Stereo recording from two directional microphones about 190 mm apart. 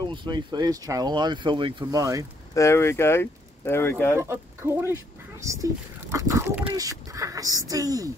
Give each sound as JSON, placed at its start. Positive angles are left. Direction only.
{"t": 0.0, "sound": "speech", "side_deg": -25}
{"t": 2.5, "sound": "speech", "side_deg": 15}
{"t": 4.2, "sound": "speech", "side_deg": -15}